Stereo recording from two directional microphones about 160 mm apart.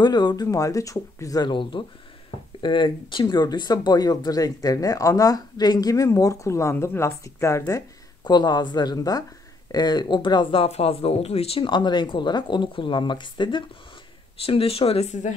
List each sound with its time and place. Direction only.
0.0 s speech: 25° left (ahead or behind); by 15.3 s 45° left (ahead or behind)